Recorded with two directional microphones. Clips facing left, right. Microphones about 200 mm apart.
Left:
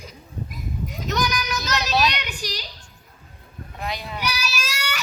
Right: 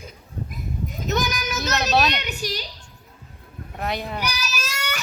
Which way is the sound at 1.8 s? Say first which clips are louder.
Right 2 dB; 50° right (ahead or behind).